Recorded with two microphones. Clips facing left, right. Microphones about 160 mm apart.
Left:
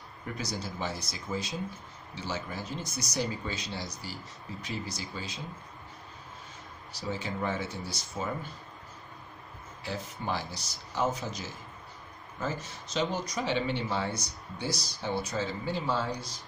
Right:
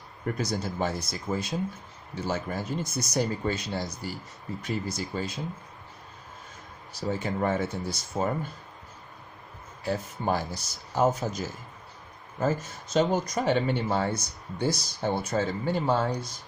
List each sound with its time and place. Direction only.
0.4 s speech: 50° right (ahead or behind)
6.9 s speech: 50° right (ahead or behind)
9.8 s speech: 45° right (ahead or behind)